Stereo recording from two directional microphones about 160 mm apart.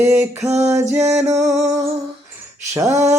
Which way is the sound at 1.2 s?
45° right (ahead or behind).